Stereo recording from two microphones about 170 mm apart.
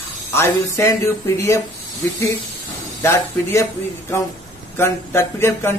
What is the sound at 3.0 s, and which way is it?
Speech, 15° left (ahead or behind).